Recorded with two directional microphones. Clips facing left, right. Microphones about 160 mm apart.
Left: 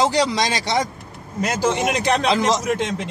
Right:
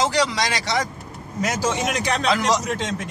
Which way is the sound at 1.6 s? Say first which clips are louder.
Left 5 dB; 60° left (ahead or behind).